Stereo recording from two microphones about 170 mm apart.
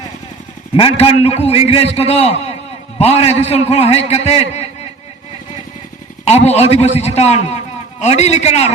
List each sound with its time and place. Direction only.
0.8 s a man's voice: 35° left (ahead or behind)
6.2 s a man's voice: 40° left (ahead or behind)